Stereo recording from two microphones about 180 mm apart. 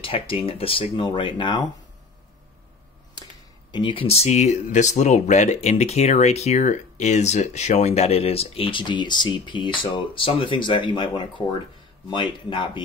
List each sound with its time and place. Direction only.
0.0 s speech: 30° left (ahead or behind)
3.7 s speech: 30° left (ahead or behind)